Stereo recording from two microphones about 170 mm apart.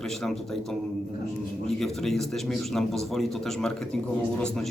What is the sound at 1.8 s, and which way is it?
A man's voice, centre (ahead or behind).